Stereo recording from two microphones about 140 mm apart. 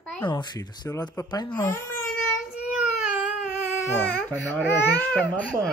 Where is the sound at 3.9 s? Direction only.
15° left (ahead or behind).